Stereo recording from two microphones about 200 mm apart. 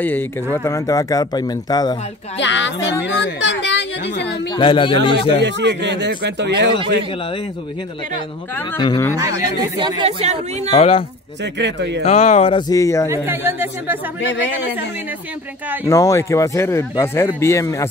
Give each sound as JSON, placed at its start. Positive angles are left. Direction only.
{"t": 0.0, "sound": "speech", "side_deg": 10}
{"t": 2.3, "sound": "speech", "side_deg": 65}
{"t": 4.6, "sound": "speech", "side_deg": 25}
{"t": 5.4, "sound": "speech", "side_deg": -60}
{"t": 8.7, "sound": "speech", "side_deg": 20}
{"t": 9.8, "sound": "speech", "side_deg": -20}
{"t": 10.7, "sound": "speech", "side_deg": 30}
{"t": 11.5, "sound": "speech", "side_deg": -60}
{"t": 12.0, "sound": "speech", "side_deg": 30}
{"t": 13.1, "sound": "speech", "side_deg": -10}
{"t": 14.2, "sound": "speech", "side_deg": 65}
{"t": 15.8, "sound": "speech", "side_deg": 15}